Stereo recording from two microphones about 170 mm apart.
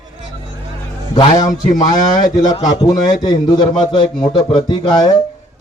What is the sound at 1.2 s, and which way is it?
Speech, 25° left (ahead or behind).